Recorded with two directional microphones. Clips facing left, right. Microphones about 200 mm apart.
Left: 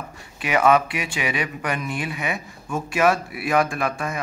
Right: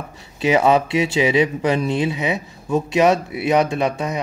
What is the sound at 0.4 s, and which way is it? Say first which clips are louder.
Speech: right 3 dB; 25° right (ahead or behind).